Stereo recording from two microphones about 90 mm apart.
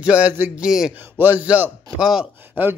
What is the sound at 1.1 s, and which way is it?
Speech, 20° right (ahead or behind).